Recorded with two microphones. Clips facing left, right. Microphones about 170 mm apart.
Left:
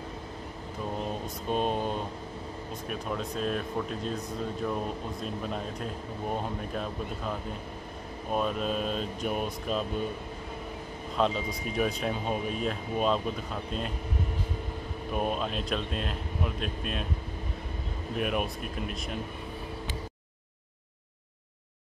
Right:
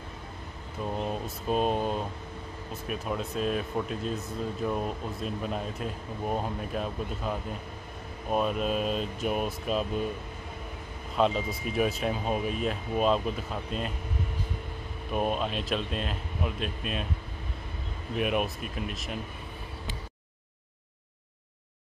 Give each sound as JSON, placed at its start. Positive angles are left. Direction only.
{"t": 1.2, "sound": "speech", "side_deg": -5}
{"t": 11.1, "sound": "speech", "side_deg": 0}
{"t": 15.1, "sound": "speech", "side_deg": 0}
{"t": 18.1, "sound": "speech", "side_deg": 0}